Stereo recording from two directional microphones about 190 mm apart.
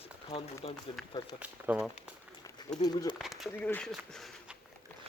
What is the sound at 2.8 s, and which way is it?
Speech, 20° left (ahead or behind).